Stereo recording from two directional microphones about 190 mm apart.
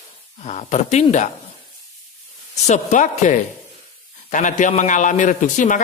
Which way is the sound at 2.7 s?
40° left (ahead or behind).